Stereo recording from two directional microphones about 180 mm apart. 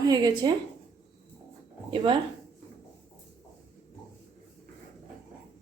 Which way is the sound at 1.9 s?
25° right (ahead or behind).